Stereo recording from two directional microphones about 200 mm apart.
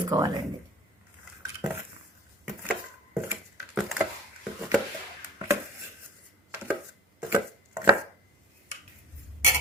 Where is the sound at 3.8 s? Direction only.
Centre (ahead or behind).